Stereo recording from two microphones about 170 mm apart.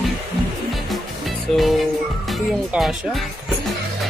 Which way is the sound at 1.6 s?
Centre (ahead or behind).